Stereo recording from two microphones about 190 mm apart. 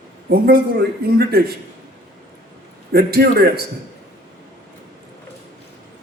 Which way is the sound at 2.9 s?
55° right (ahead or behind).